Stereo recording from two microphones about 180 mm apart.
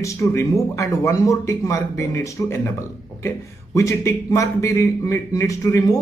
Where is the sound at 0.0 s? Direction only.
15° left (ahead or behind).